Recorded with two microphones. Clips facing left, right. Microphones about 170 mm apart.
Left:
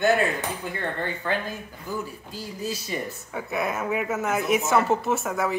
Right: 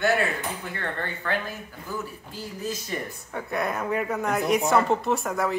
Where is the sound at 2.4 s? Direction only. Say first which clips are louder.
Even; 10° left (ahead or behind).